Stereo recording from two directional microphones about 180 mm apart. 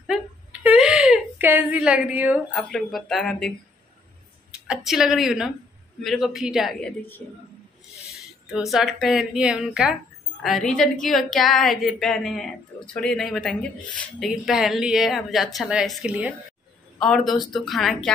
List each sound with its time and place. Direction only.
0.0 s a sound: 5° right (ahead or behind)
2.5 s a woman's voice: centre (ahead or behind)
8.5 s a woman's voice: centre (ahead or behind)